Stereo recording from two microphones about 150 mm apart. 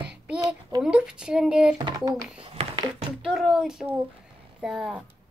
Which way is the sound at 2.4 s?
40° right (ahead or behind).